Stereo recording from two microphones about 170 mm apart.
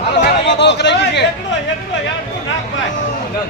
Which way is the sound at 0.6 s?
90° left.